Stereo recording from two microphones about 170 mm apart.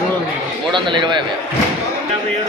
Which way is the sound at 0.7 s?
30° right (ahead or behind).